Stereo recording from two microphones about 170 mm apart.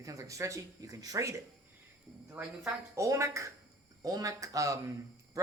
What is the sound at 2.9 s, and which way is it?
Speech, 15° right (ahead or behind).